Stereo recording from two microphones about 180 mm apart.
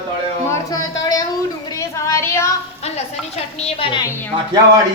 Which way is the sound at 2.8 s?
35° left (ahead or behind).